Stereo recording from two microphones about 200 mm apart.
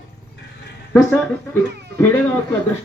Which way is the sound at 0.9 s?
10° left (ahead or behind).